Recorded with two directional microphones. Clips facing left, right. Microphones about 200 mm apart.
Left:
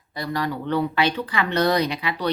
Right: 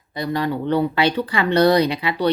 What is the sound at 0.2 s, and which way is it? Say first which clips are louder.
Speech: right 4 dB; 25° right (ahead or behind).